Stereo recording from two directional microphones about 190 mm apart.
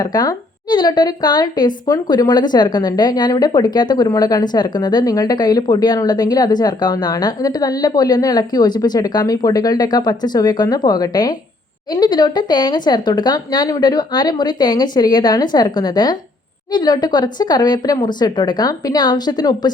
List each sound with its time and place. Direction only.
0.0 s speech: 20° left (ahead or behind)